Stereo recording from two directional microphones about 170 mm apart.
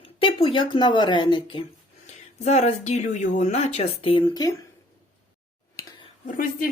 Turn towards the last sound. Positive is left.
turn(degrees=55)  # may be behind; listen again after turning